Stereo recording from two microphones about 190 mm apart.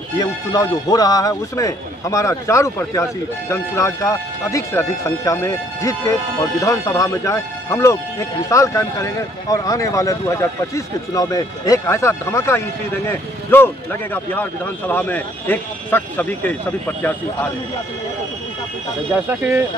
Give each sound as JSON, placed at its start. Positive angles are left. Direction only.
{"t": 0.2, "sound": "speech", "side_deg": 20}
{"t": 19.1, "sound": "speech", "side_deg": -10}